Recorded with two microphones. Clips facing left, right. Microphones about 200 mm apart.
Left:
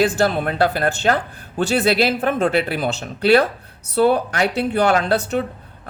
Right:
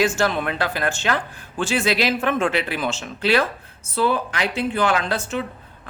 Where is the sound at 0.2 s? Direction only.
40° left (ahead or behind).